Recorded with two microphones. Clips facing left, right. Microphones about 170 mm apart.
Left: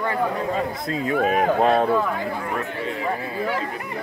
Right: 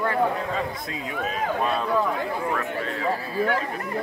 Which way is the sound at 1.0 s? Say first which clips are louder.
Left 9 dB; 65° left (ahead or behind).